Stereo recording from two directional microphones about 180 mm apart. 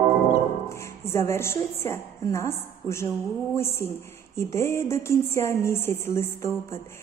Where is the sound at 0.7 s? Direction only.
15° left (ahead or behind).